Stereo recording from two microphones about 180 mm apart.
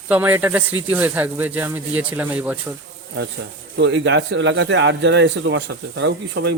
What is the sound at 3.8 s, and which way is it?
Speech, 85° right.